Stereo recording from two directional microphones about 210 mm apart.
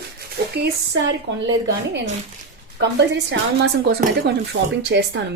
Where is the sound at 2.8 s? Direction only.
55° right (ahead or behind).